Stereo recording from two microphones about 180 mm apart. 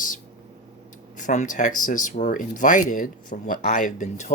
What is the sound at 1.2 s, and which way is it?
Speech, 45° left (ahead or behind).